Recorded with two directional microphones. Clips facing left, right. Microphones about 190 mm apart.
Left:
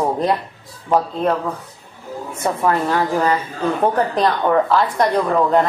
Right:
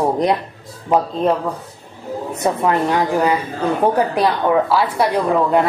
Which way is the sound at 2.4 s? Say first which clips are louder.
Right 1 dB; 20° right (ahead or behind).